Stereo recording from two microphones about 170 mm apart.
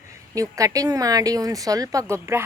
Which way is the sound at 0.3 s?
20° right (ahead or behind).